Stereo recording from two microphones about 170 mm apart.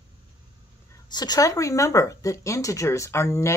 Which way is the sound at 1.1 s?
25° left (ahead or behind).